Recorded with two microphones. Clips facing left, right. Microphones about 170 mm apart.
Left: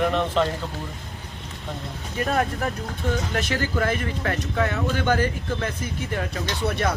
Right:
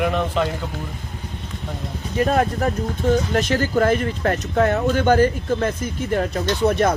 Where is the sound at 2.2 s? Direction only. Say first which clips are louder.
Right 5 dB; 35° right (ahead or behind).